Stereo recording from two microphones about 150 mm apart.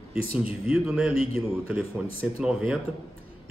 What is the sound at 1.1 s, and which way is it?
Speech, 40° left (ahead or behind).